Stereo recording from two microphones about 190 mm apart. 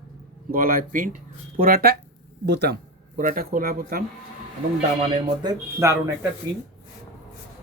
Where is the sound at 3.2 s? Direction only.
45° right (ahead or behind).